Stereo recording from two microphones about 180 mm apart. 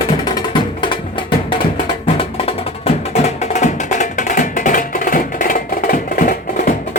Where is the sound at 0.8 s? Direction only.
25° left (ahead or behind).